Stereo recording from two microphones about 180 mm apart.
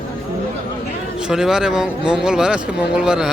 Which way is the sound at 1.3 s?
5° right (ahead or behind).